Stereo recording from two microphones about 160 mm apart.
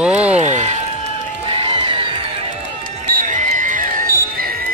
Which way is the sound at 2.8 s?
50° right (ahead or behind).